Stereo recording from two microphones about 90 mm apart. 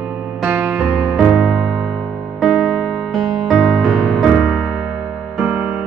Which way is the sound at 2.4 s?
Centre (ahead or behind).